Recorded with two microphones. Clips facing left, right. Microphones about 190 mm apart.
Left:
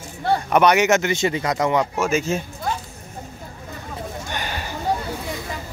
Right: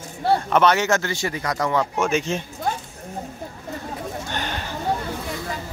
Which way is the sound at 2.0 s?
5° left (ahead or behind).